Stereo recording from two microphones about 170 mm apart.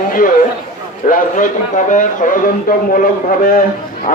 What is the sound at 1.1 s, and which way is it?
A man's voice, 50° left (ahead or behind).